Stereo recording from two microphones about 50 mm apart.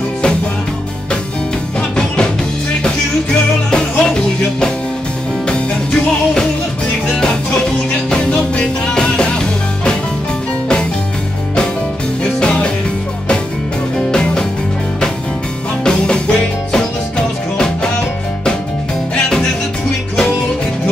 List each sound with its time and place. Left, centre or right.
1.8 s music: centre
3.7 s music: centre
8.1 s music: left
12.2 s music: left
13.9 s music: centre
15.8 s music: centre